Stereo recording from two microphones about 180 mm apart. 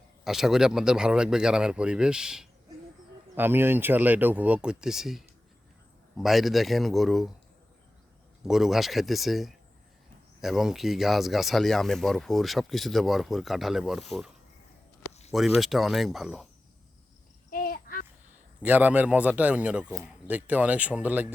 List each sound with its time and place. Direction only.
0.3 s speech: centre (ahead or behind)
8.4 s speech: centre (ahead or behind)
15.3 s speech: centre (ahead or behind)
17.5 s insect: 50° left (ahead or behind)
18.6 s speech: 10° right (ahead or behind)